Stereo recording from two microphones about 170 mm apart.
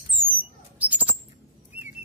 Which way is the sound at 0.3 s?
10° right (ahead or behind).